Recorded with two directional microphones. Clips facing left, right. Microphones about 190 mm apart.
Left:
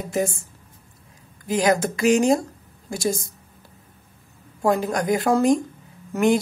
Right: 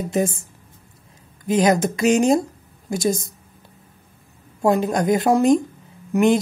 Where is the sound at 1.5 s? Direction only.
20° right (ahead or behind).